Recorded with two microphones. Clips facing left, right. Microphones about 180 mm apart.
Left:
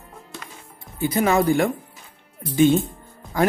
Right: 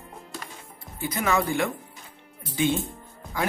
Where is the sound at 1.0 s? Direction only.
30° left (ahead or behind).